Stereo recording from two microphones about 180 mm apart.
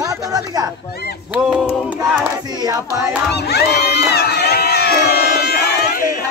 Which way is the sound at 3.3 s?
65° left (ahead or behind).